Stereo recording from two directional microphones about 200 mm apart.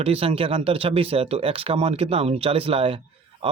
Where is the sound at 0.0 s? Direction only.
30° right (ahead or behind).